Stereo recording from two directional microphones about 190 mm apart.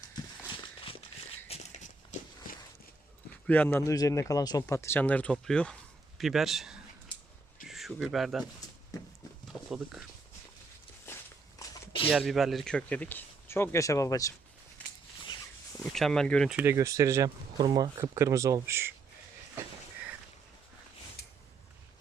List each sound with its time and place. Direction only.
0.2 s a sound: 20° left (ahead or behind)
1.5 s walk: 30° left (ahead or behind)
3.4 s speech: 10° left (ahead or behind)
8.9 s a sound: 20° left (ahead or behind)
9.5 s speech: centre (ahead or behind)
11.6 s a sound: 25° left (ahead or behind)
12.1 s speech: centre (ahead or behind); by 14.3 s 15° left (ahead or behind)
15.8 s speech: centre (ahead or behind)
16.6 s speech: 15° right (ahead or behind)